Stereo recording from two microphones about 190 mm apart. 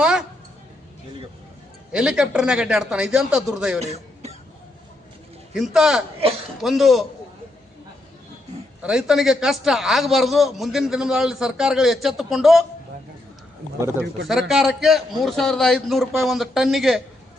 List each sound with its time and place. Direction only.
0.0 s a sound: 5° right (ahead or behind)
1.9 s a man's voice: 5° right (ahead or behind)
3.8 s music: 35° right (ahead or behind)
5.5 s a man's voice: centre (ahead or behind)
8.8 s a man's voice: 5° right (ahead or behind)
14.3 s a man's voice: centre (ahead or behind)